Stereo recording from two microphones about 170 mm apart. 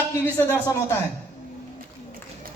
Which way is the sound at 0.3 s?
10° left (ahead or behind).